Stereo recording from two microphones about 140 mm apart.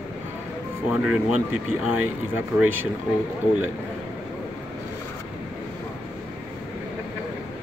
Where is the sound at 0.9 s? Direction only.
10° right (ahead or behind).